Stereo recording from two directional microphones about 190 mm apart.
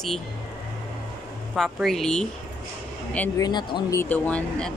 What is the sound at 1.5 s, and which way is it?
Speech, centre (ahead or behind).